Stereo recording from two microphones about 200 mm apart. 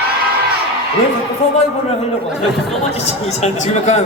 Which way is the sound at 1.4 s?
30° left (ahead or behind).